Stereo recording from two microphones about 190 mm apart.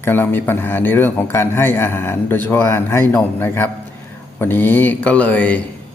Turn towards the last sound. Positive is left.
turn(degrees=10)  # may be behind; listen again after turning